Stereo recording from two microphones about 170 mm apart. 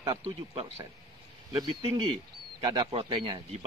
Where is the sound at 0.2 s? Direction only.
35° right (ahead or behind).